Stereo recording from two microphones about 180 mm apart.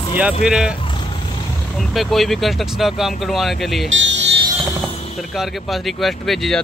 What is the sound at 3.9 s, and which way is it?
Music, 90° right.